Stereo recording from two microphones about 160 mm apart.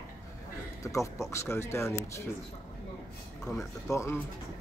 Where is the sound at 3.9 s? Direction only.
15° left (ahead or behind).